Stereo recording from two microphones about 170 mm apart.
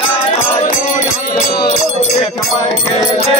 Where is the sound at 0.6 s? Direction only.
50° left (ahead or behind).